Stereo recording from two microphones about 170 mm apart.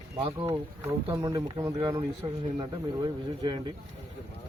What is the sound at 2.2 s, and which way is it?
Speech, 30° right (ahead or behind).